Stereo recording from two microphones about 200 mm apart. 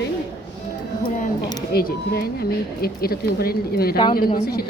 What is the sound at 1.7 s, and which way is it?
A woman's voice, 50° left (ahead or behind).